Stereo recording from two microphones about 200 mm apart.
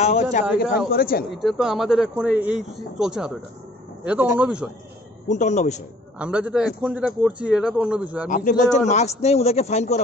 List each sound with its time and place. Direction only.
0.0 s a sound: 35° left (ahead or behind)
0.8 s a man's voice: 50° left (ahead or behind)
1.3 s a man's voice: centre (ahead or behind)
5.3 s a man's voice: 35° left (ahead or behind)
6.1 s a man's voice: 5° right (ahead or behind)
8.3 s a man's voice: 40° left (ahead or behind)